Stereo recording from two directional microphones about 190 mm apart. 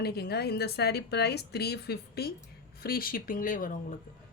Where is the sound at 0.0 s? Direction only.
55° left (ahead or behind).